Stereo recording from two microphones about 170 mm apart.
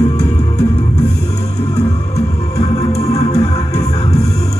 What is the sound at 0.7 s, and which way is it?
Music, 40° left (ahead or behind).